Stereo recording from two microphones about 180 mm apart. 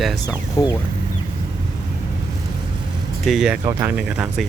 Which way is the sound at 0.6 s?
20° left (ahead or behind).